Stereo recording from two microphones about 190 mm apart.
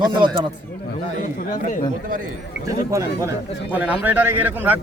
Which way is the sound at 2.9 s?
15° right (ahead or behind).